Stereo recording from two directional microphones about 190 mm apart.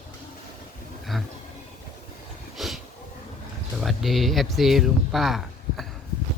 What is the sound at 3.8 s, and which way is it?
Speech, centre (ahead or behind).